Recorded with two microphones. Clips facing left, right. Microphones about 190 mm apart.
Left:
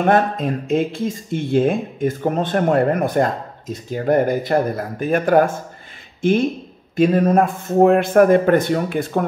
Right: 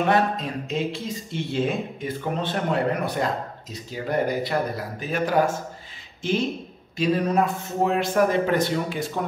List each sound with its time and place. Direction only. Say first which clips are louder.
0.0 s speech: left 5 dB; 50° left (ahead or behind)